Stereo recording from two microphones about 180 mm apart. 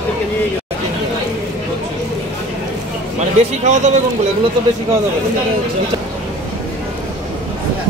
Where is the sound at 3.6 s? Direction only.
40° right (ahead or behind).